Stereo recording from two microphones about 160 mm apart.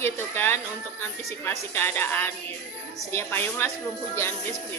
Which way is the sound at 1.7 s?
15° left (ahead or behind).